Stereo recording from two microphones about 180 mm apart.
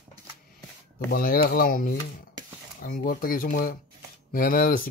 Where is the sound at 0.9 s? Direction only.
55° left (ahead or behind).